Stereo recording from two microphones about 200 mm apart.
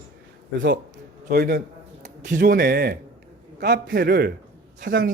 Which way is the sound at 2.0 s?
40° right (ahead or behind).